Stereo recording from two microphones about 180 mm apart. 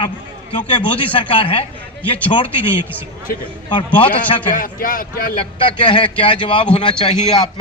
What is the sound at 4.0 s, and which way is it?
Speech, 30° left (ahead or behind).